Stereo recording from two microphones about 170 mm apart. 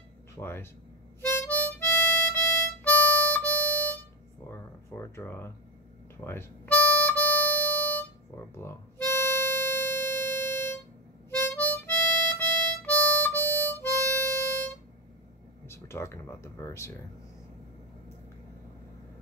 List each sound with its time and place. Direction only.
0.4 s speech: 15° left (ahead or behind)
1.2 s harmonica: 15° left (ahead or behind)
4.5 s a sound: 15° left (ahead or behind)
6.2 s harmonica: 10° left (ahead or behind)
8.5 s music: 15° left (ahead or behind)
11.2 s harmonica: 15° left (ahead or behind)
15.6 s speech: 15° left (ahead or behind)